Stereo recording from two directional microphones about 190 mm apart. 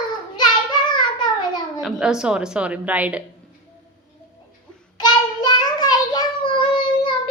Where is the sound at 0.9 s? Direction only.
25° left (ahead or behind).